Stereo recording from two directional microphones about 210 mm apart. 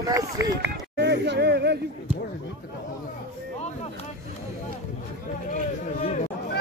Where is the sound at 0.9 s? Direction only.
55° right (ahead or behind).